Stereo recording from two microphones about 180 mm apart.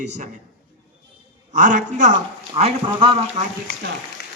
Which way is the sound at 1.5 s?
45° right (ahead or behind).